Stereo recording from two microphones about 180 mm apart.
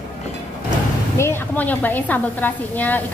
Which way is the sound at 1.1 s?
15° left (ahead or behind).